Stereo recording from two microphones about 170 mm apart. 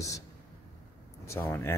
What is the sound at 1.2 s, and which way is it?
Speech, 15° left (ahead or behind).